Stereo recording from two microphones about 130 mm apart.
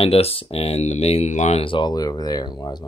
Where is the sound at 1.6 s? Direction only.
35° left (ahead or behind).